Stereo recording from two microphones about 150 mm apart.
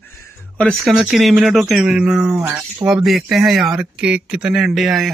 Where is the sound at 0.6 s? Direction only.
Centre (ahead or behind).